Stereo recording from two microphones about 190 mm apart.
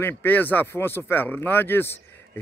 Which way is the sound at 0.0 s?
10° left (ahead or behind).